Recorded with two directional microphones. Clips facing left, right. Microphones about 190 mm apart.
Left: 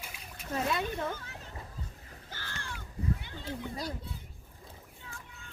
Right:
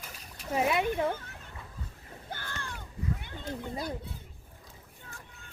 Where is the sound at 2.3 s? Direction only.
55° right (ahead or behind).